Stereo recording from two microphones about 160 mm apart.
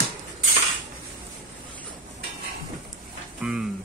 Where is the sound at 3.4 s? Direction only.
5° right (ahead or behind).